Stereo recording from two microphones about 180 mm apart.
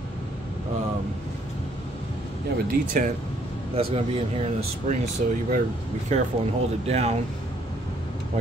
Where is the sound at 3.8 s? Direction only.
30° right (ahead or behind).